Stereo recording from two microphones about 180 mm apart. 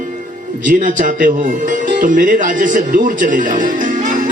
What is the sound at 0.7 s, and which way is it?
Speech, 45° right (ahead or behind).